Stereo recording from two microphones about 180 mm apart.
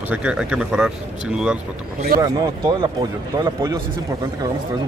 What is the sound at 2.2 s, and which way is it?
A man's voice, 20° right (ahead or behind).